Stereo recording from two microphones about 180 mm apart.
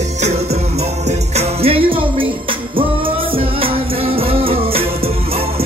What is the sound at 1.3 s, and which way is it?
Music, 35° right (ahead or behind).